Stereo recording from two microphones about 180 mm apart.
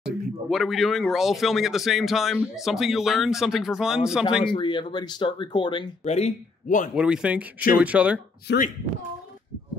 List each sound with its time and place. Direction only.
0.0 s speech: centre (ahead or behind)
4.6 s speech: 25° left (ahead or behind)
7.0 s speech: 5° right (ahead or behind)
8.5 s speech: 70° left (ahead or behind)